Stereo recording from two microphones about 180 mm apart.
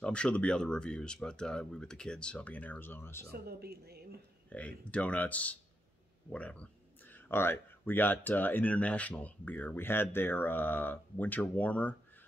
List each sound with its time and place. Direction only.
0.0 s speech: 5° left (ahead or behind)
3.3 s speech: 60° right (ahead or behind)
4.5 s speech: 5° left (ahead or behind)